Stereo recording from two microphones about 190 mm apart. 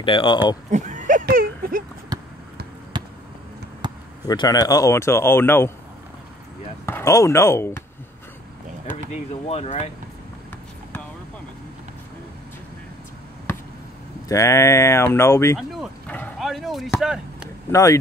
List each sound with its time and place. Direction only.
0.0 s speech: 25° left (ahead or behind)
0.7 s a sound: 40° right (ahead or behind)
2.1 s basketball bounce: 20° right (ahead or behind)
3.8 s basketball bounce: 25° right (ahead or behind)
4.3 s speech: 20° left (ahead or behind)
6.9 s speech: 15° left (ahead or behind)
9.1 s speech: 35° left (ahead or behind)
14.3 s speech: 15° left (ahead or behind)
15.7 s a sound: 5° left (ahead or behind)
17.6 s speech: 15° left (ahead or behind)